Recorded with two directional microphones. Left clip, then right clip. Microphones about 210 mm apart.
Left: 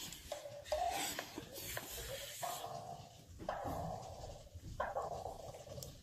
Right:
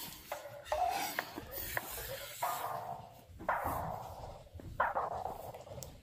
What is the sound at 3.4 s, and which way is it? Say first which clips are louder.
Dog: right 7 dB; 30° right (ahead or behind).